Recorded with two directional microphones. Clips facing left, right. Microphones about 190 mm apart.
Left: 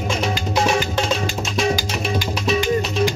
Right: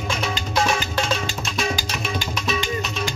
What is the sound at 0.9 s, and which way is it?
Music, 25° left (ahead or behind).